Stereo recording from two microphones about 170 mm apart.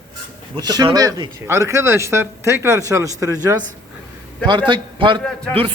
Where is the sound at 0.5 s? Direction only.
25° right (ahead or behind).